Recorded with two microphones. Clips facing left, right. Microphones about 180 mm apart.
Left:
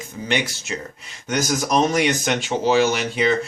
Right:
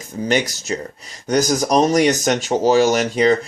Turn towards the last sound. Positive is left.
turn(degrees=-40)  # may be behind; listen again after turning